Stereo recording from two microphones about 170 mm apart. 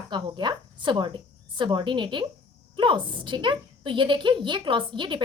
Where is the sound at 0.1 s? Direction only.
25° right (ahead or behind).